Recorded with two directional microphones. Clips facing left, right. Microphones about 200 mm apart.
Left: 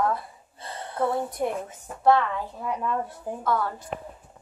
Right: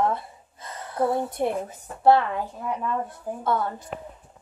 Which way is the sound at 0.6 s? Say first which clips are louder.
Left 1 dB; 30° left (ahead or behind).